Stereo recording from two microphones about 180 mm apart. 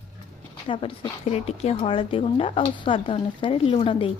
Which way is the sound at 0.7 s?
30° left (ahead or behind).